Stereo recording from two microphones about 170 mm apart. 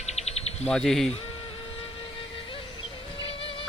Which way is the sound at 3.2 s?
30° left (ahead or behind).